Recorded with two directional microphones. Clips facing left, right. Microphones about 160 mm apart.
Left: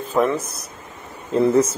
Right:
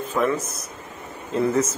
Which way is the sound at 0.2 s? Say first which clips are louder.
Left 4 dB; 30° left (ahead or behind).